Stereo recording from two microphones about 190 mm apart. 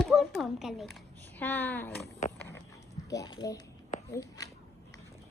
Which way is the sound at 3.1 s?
20° left (ahead or behind).